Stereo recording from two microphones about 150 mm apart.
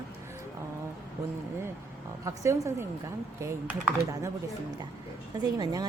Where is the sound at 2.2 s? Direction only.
20° right (ahead or behind).